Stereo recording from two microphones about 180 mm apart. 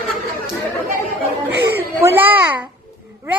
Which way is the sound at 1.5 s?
75° right (ahead or behind).